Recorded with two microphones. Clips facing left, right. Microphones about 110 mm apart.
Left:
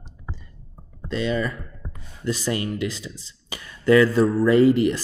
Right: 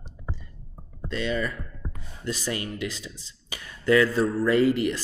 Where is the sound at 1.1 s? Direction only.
25° left (ahead or behind).